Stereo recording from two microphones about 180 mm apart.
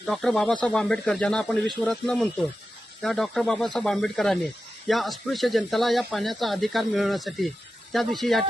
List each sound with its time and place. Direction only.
0.0 s speech: centre (ahead or behind)